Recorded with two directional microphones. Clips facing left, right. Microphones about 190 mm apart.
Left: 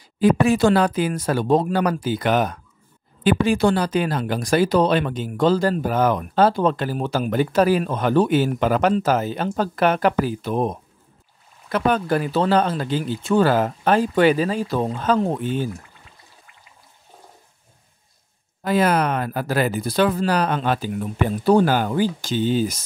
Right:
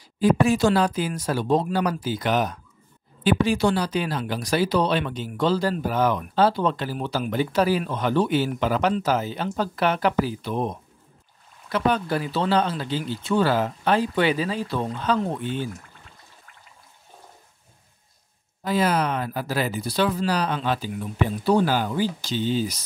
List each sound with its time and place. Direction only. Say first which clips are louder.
0.2 s speech: left 3 dB; 60° left (ahead or behind); by 15.5 s 45° left (ahead or behind)
18.6 s speech: left 3 dB; 55° left (ahead or behind)